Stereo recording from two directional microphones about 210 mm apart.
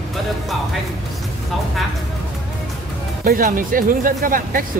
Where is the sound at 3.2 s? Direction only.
40° right (ahead or behind).